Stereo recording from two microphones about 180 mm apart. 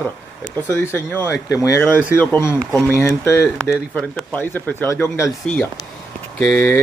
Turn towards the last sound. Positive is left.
turn(degrees=5)  # may be behind; listen again after turning